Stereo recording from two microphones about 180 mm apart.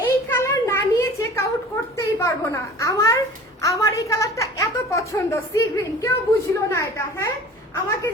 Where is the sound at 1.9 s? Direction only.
15° left (ahead or behind).